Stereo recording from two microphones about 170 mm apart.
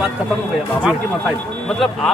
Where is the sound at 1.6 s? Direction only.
Centre (ahead or behind).